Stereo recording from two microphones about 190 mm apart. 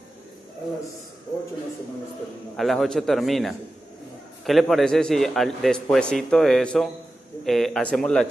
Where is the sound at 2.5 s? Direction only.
Centre (ahead or behind).